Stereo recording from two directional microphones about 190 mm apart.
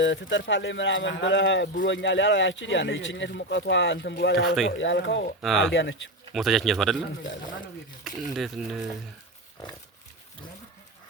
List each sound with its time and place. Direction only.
0.0 s speech: 75° left (ahead or behind)
4.4 s speech: centre (ahead or behind)
4.8 s speech: 70° left (ahead or behind)
5.4 s speech: centre (ahead or behind)
5.7 s speech: 75° left (ahead or behind)
6.3 s speech: centre (ahead or behind)
8.0 s speech: centre (ahead or behind)